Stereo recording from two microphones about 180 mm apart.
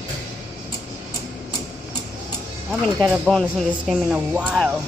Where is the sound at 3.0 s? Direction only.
Centre (ahead or behind).